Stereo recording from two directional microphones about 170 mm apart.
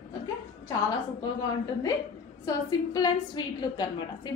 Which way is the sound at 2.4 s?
20° left (ahead or behind).